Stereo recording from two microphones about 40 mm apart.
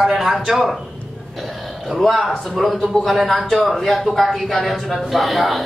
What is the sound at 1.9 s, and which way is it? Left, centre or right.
A man's voice, centre.